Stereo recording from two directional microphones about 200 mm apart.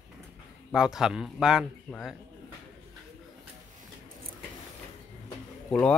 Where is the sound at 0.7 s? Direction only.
5° right (ahead or behind).